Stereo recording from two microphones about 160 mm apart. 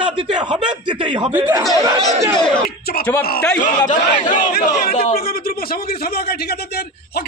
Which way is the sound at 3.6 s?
55° left (ahead or behind).